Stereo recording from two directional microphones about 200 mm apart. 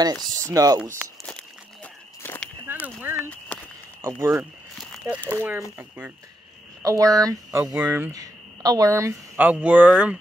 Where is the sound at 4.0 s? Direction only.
15° right (ahead or behind).